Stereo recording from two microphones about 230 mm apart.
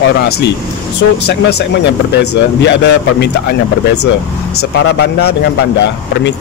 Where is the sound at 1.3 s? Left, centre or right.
Left.